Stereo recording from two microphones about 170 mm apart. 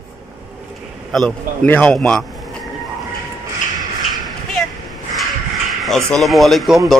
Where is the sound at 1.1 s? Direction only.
5° left (ahead or behind).